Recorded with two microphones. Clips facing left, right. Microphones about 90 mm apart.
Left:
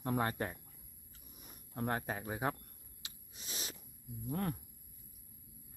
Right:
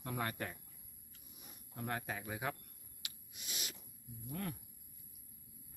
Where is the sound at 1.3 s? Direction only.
40° left (ahead or behind).